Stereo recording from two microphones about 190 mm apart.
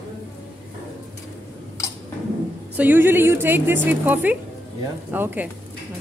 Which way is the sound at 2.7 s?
10° right (ahead or behind).